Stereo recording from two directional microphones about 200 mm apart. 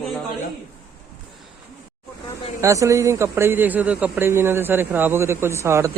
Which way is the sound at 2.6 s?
15° right (ahead or behind).